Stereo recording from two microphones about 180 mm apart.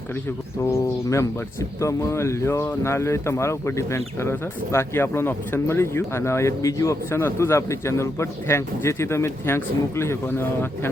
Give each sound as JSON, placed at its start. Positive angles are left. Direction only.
{"t": 0.6, "sound": "speech", "side_deg": 15}